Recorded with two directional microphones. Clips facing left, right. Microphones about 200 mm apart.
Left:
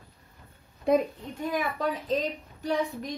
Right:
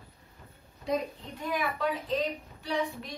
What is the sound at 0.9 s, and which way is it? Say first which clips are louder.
Speech: left 7 dB; 55° left (ahead or behind).